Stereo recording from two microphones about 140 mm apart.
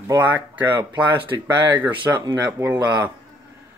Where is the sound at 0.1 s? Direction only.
10° right (ahead or behind).